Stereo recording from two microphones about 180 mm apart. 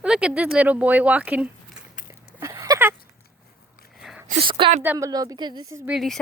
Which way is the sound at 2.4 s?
20° right (ahead or behind).